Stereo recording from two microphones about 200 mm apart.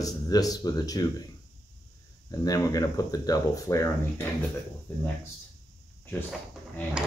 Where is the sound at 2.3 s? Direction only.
20° left (ahead or behind).